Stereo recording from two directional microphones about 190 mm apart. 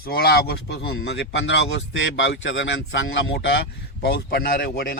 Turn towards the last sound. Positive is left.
turn(degrees=50)  # may be behind; listen again after turning